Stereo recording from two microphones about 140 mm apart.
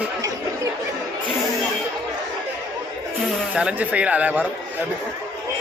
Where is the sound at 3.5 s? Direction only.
10° right (ahead or behind).